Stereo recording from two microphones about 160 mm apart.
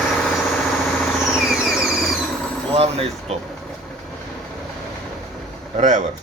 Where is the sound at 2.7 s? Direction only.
40° right (ahead or behind).